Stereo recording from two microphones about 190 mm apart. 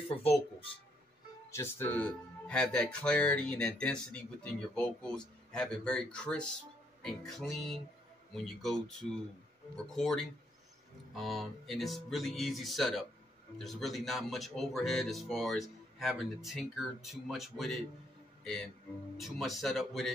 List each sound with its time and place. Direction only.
0.1 s speech: 30° left (ahead or behind)
1.5 s speech: 10° left (ahead or behind)
9.8 s speech: centre (ahead or behind)